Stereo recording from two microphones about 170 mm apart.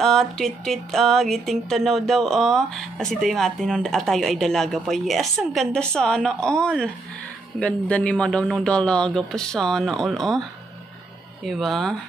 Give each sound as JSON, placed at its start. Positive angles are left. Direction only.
{"t": 0.0, "sound": "speech", "side_deg": 0}
{"t": 11.4, "sound": "speech", "side_deg": 0}